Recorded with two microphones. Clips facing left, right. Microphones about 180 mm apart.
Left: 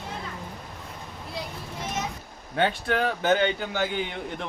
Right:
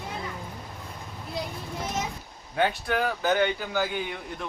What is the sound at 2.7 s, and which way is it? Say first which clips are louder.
Speech: left 1 dB; 25° left (ahead or behind).